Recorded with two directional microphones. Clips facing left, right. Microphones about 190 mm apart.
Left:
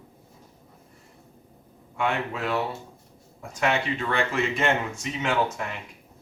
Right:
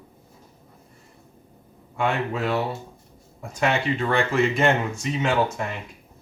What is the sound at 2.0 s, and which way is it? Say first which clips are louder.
Speech: right 3 dB; 30° right (ahead or behind).